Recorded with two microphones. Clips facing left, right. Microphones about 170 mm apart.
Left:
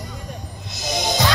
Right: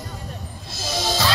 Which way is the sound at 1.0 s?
20° left (ahead or behind).